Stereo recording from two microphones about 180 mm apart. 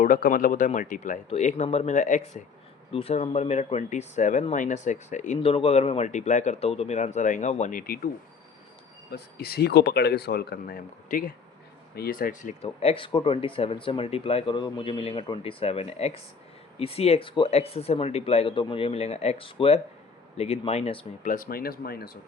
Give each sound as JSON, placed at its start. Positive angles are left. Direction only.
{"t": 0.0, "sound": "speech", "side_deg": 50}
{"t": 9.0, "sound": "speech", "side_deg": 60}
{"t": 21.2, "sound": "speech", "side_deg": 50}